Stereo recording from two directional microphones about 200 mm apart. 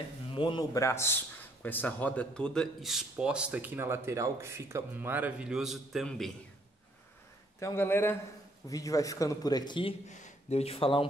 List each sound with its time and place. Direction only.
0.3 s a man's voice: 25° left (ahead or behind); by 6.3 s centre (ahead or behind)
7.6 s a man's voice: 10° left (ahead or behind); by 11.1 s 25° left (ahead or behind)